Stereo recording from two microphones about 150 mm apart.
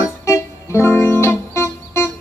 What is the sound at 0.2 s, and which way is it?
Music, 20° left (ahead or behind).